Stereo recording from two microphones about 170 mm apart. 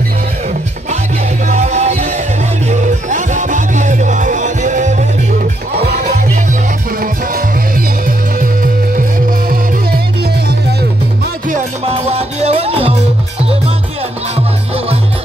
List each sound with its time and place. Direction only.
1.5 s music: 40° right (ahead or behind)
11.9 s music: 35° right (ahead or behind)